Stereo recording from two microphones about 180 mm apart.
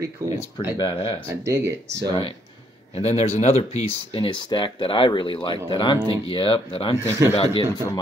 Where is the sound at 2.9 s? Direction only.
35° left (ahead or behind).